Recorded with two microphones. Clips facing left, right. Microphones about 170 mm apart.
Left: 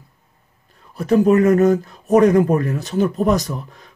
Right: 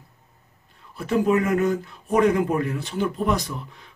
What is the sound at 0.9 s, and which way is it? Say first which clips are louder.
Speech: left 7 dB; 40° left (ahead or behind).